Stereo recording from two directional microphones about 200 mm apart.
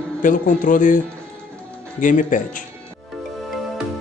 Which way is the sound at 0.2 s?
40° left (ahead or behind).